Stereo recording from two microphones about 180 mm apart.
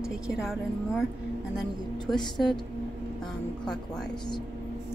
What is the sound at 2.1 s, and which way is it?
Speech, 25° left (ahead or behind).